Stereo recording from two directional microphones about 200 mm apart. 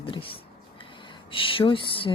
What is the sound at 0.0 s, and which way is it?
Speech, 25° left (ahead or behind).